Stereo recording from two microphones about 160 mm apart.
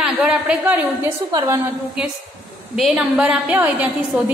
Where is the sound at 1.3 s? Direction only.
25° right (ahead or behind).